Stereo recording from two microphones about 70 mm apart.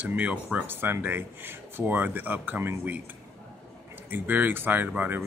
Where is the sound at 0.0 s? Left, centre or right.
Right.